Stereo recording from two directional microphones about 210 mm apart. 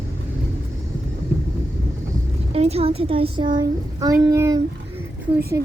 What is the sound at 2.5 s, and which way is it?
A woman's voice, 30° right (ahead or behind).